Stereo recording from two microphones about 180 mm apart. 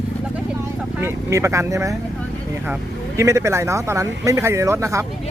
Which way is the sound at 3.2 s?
15° right (ahead or behind).